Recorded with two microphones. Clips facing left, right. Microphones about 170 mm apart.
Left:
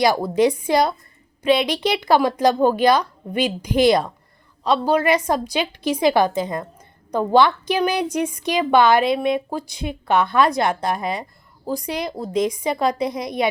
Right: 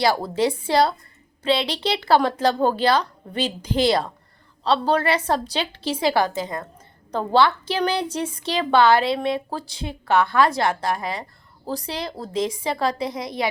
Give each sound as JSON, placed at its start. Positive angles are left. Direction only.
{"t": 0.0, "sound": "a woman's voice", "side_deg": 15}
{"t": 12.3, "sound": "a woman's voice", "side_deg": -25}
{"t": 12.5, "sound": "a woman's voice", "side_deg": 15}